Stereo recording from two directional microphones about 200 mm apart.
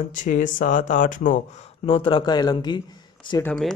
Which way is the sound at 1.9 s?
25° left (ahead or behind).